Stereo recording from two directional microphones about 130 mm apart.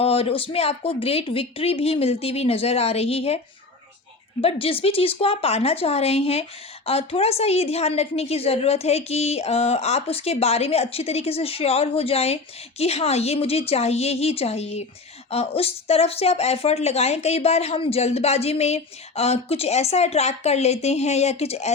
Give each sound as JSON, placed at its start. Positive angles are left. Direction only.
{"t": 0.0, "sound": "speech", "side_deg": 50}